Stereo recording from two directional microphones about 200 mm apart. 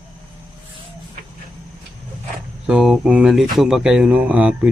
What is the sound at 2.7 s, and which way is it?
Speech, centre (ahead or behind).